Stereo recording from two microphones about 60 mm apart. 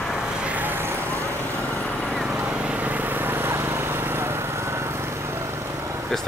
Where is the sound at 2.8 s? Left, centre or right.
Right.